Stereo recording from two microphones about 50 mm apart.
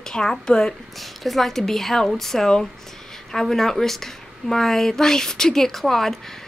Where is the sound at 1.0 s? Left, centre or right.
Centre.